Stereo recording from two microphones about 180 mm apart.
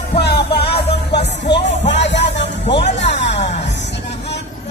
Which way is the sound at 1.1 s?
75° left (ahead or behind).